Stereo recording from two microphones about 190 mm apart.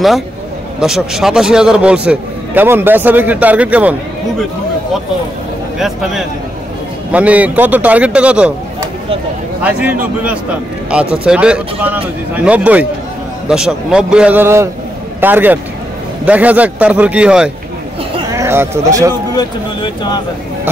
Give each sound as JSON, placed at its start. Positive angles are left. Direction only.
{"t": 0.7, "sound": "a man's voice", "side_deg": 0}
{"t": 5.8, "sound": "a man's voice", "side_deg": 0}
{"t": 9.6, "sound": "a man's voice", "side_deg": -5}
{"t": 19.3, "sound": "speech", "side_deg": 25}